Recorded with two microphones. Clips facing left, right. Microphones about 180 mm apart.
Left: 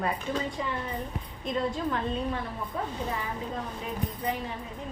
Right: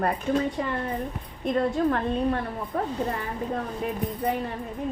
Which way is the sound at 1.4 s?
55° right (ahead or behind).